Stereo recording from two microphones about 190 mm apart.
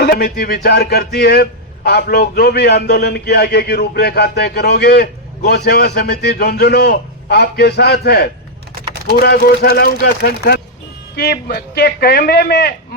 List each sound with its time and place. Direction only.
0.0 s speech: 55° left (ahead or behind)